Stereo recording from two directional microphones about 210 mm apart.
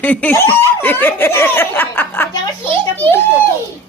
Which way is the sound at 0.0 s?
5° left (ahead or behind).